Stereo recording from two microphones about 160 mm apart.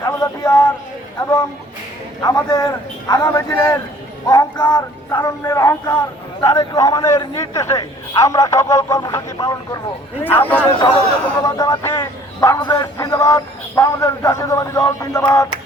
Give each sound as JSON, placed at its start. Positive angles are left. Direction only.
{"t": 0.0, "sound": "speech", "side_deg": 20}
{"t": 2.2, "sound": "a man's voice", "side_deg": 25}
{"t": 10.2, "sound": "a man's voice", "side_deg": 10}
{"t": 10.7, "sound": "a man's voice", "side_deg": 30}